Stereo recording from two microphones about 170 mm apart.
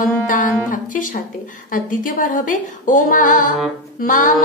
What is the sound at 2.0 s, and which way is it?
Music, 50° left (ahead or behind).